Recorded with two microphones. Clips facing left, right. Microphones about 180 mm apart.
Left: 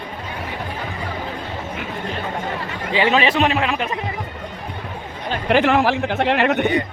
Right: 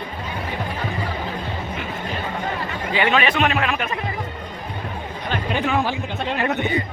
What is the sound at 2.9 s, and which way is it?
A man's voice, 30° left (ahead or behind).